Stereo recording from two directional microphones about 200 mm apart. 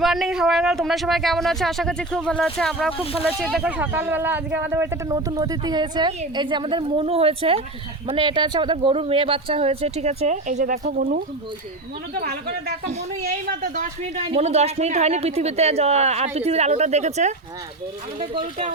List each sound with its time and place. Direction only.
0.0 s speech: centre (ahead or behind)
3.0 s speech: 30° left (ahead or behind)
3.2 s speech: 5° right (ahead or behind); by 11.2 s 40° right (ahead or behind)
12.1 s speech: 50° right (ahead or behind)
14.3 s speech: 30° right (ahead or behind)